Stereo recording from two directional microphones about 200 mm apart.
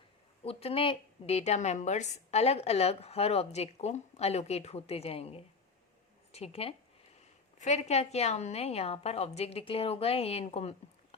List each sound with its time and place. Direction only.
0.4 s a woman's voice: 30° left (ahead or behind)